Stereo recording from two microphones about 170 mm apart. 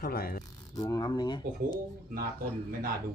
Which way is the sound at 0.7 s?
20° left (ahead or behind).